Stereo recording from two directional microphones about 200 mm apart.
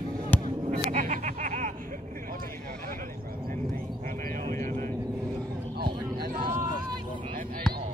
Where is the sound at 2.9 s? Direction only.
45° right (ahead or behind).